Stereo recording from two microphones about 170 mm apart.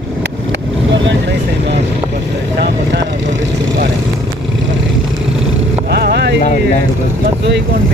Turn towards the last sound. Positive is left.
turn(degrees=-75)  # may be behind; listen again after turning